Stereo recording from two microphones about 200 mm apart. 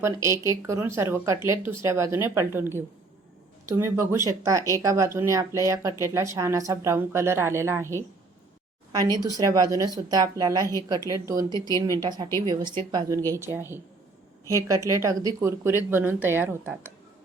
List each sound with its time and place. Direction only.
0.0 s a woman's voice: 15° right (ahead or behind)